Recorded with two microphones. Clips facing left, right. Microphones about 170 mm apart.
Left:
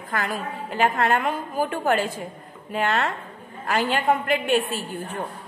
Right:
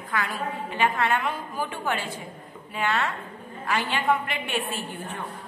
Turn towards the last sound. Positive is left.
turn(degrees=40)  # may be behind; listen again after turning